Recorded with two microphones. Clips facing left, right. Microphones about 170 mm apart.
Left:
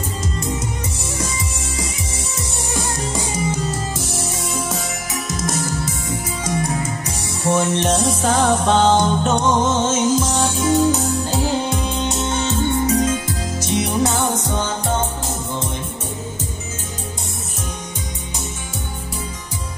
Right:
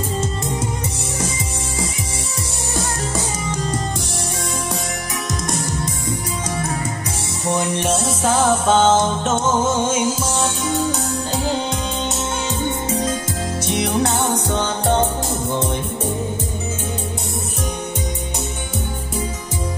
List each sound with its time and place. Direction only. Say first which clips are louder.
5.3 s music: left 1 dB; centre (ahead or behind)
7.4 s music: left 2 dB; 15° right (ahead or behind)
12.7 s music: left 4 dB; 25° right (ahead or behind)
13.6 s music: even; 60° right (ahead or behind)